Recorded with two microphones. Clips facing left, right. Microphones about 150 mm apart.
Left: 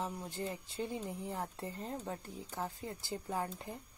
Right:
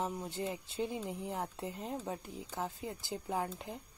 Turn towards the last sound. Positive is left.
turn(degrees=-15)  # may be behind; listen again after turning